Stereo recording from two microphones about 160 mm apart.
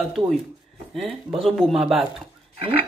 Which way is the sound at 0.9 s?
Centre (ahead or behind).